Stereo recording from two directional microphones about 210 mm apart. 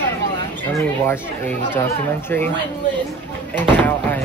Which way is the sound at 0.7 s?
10° left (ahead or behind).